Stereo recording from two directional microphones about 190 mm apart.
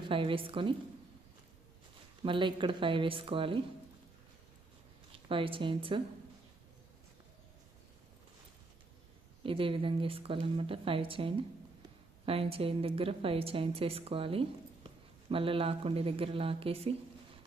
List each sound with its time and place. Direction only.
0.1 s a woman's voice: 25° right (ahead or behind)
2.2 s a woman's voice: 25° right (ahead or behind)
5.1 s a woman's voice: 30° right (ahead or behind)
9.4 s a woman's voice: 30° right (ahead or behind)